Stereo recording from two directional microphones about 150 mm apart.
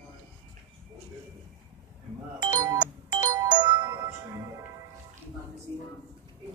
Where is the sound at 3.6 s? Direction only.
30° right (ahead or behind).